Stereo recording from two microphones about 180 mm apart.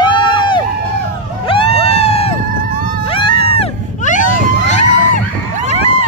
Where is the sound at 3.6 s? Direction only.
45° left (ahead or behind).